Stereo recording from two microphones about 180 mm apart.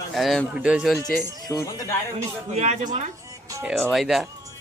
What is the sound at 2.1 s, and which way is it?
Speech, 40° right (ahead or behind).